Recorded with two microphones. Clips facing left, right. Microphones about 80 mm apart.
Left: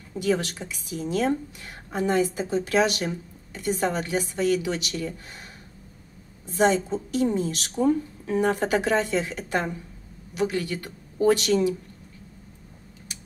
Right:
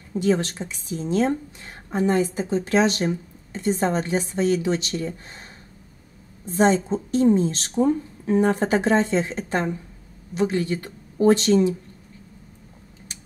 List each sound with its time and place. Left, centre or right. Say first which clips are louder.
0.2 s a woman's voice: right 3 dB; right
6.4 s a woman's voice: right 2 dB; right